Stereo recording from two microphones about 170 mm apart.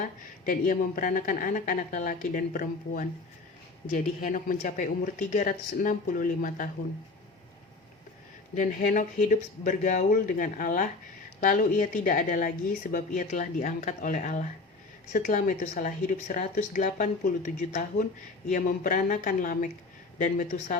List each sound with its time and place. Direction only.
0.0 s speech: 50° left (ahead or behind)
8.5 s speech: 50° left (ahead or behind)